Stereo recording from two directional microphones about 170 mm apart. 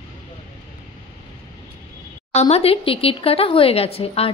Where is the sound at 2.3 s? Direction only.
40° left (ahead or behind).